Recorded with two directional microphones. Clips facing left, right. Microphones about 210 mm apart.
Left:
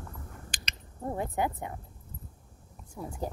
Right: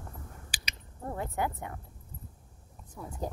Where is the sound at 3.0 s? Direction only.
15° left (ahead or behind).